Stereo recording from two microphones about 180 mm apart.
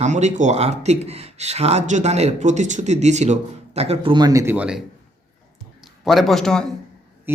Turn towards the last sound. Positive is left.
turn(degrees=5)  # may be behind; listen again after turning